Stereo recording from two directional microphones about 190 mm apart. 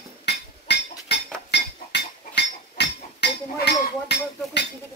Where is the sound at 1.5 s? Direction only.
65° left (ahead or behind).